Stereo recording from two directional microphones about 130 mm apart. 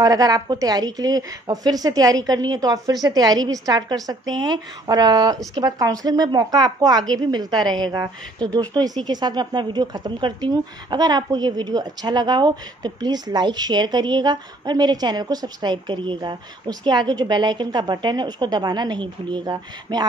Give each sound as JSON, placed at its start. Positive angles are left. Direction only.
{"t": 0.0, "sound": "a woman's voice", "side_deg": -30}